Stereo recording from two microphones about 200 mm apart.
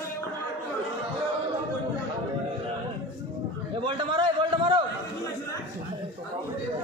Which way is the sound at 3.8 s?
25° right (ahead or behind).